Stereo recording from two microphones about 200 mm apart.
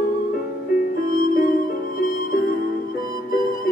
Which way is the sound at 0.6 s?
45° left (ahead or behind).